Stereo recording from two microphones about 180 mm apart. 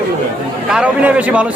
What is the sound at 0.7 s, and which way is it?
Speech, 5° right (ahead or behind).